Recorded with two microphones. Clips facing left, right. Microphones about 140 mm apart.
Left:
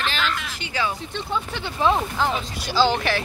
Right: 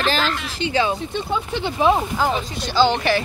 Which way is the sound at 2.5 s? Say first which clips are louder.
Right 2 dB; 5° left (ahead or behind).